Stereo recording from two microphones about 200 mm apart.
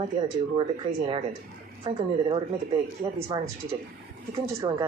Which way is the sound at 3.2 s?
25° right (ahead or behind).